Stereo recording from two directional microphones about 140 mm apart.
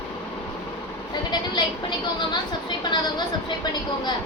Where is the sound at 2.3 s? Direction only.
30° left (ahead or behind).